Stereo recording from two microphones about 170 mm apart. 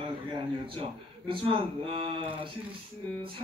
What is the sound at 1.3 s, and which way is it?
Speech, 30° right (ahead or behind).